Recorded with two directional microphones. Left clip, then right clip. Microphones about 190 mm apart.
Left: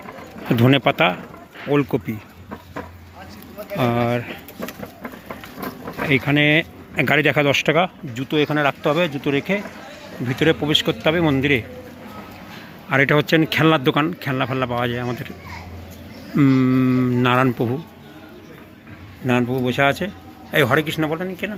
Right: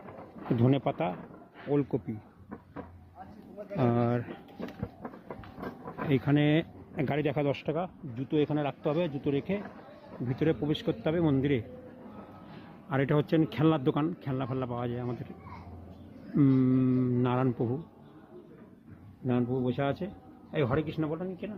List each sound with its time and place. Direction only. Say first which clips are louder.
0.5 s speech: left 12 dB; centre (ahead or behind)
3.8 s speech: left 9 dB; 25° right (ahead or behind)
6.1 s speech: left 11 dB; 20° right (ahead or behind)
6.9 s speech: left 14 dB; centre (ahead or behind)
8.1 s speech: left 7 dB; 5° right (ahead or behind)
12.9 s speech: left 12 dB; 10° right (ahead or behind)
16.3 s speech: left 9 dB; 10° right (ahead or behind)
19.2 s speech: left 10 dB; centre (ahead or behind)